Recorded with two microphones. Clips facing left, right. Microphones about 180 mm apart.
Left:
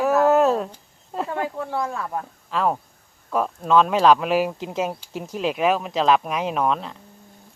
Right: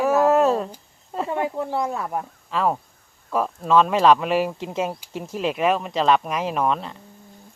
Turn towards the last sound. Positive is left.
turn(degrees=0)  # may be behind; listen again after turning